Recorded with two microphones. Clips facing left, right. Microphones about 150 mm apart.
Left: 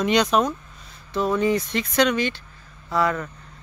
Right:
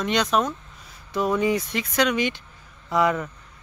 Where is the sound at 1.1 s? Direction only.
10° right (ahead or behind).